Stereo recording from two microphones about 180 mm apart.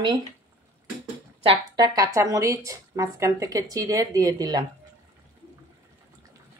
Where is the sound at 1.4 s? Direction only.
25° right (ahead or behind).